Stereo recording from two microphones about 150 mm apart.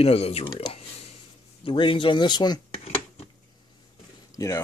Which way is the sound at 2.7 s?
45° left (ahead or behind).